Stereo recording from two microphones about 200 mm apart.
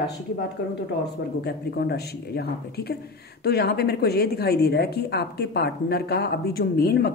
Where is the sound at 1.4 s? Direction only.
55° left (ahead or behind).